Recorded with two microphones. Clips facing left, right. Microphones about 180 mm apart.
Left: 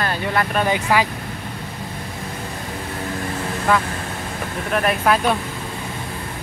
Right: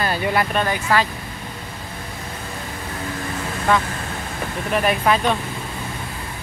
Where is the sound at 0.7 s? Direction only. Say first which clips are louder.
Left 1 dB; 15° left (ahead or behind).